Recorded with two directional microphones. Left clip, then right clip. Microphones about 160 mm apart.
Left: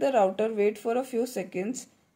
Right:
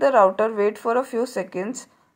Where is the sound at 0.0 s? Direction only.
10° left (ahead or behind).